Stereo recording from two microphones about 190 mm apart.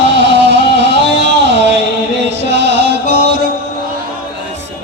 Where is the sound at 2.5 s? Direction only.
65° right (ahead or behind).